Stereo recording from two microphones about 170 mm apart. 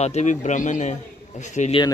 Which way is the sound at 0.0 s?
40° left (ahead or behind).